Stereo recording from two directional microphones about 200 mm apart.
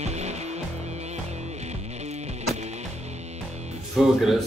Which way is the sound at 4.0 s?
Centre (ahead or behind).